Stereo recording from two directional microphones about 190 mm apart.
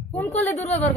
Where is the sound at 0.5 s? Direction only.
35° left (ahead or behind).